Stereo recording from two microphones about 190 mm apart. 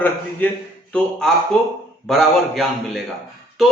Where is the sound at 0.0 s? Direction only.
10° left (ahead or behind).